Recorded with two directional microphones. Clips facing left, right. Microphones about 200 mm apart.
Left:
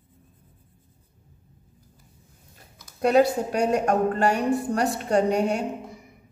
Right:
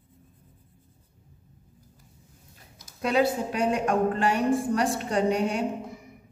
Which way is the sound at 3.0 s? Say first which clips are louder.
Left 5 dB; 45° left (ahead or behind).